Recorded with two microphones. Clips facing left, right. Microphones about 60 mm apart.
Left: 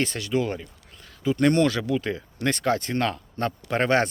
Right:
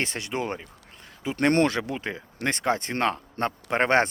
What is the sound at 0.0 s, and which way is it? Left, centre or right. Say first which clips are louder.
Speech: left 4 dB; right.